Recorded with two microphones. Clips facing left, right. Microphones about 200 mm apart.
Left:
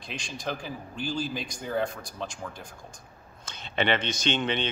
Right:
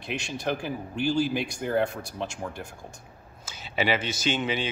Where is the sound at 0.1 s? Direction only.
60° right (ahead or behind).